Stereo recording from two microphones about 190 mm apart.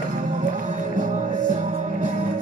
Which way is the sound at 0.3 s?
40° right (ahead or behind).